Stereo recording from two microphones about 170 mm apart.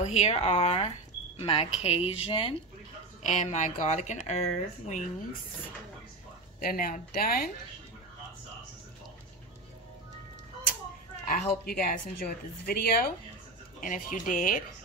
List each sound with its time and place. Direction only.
0.0 s speech: 40° left (ahead or behind)
6.6 s speech: 60° left (ahead or behind)
11.2 s speech: 60° left (ahead or behind)